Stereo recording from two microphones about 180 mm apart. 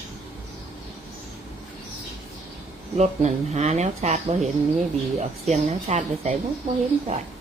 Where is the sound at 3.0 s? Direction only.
40° right (ahead or behind).